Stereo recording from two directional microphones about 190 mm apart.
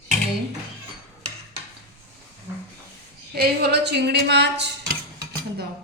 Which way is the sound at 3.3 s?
55° right (ahead or behind).